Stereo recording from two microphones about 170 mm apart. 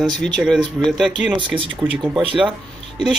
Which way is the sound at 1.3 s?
30° right (ahead or behind).